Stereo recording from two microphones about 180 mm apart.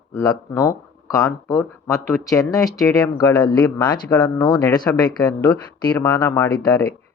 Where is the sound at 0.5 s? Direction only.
20° left (ahead or behind).